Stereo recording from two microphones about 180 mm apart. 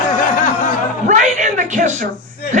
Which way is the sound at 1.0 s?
45° right (ahead or behind).